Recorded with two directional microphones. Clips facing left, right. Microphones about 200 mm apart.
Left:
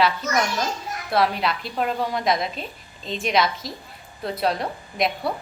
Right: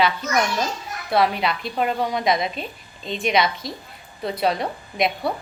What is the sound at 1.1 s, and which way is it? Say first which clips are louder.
A woman's voice: right 2 dB; centre (ahead or behind).